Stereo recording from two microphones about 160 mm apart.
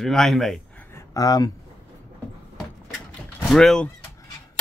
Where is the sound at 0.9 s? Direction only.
25° left (ahead or behind).